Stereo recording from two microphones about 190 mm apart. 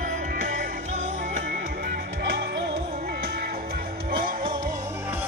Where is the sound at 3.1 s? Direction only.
55° right (ahead or behind).